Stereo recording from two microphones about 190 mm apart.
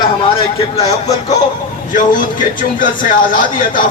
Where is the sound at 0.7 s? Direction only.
35° left (ahead or behind).